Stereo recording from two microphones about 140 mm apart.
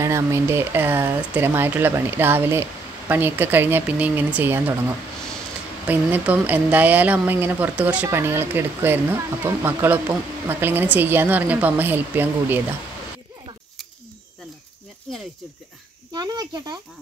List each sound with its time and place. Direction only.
0.0 s a woman's voice: 20° right (ahead or behind)
16.1 s a child's voice: 30° right (ahead or behind)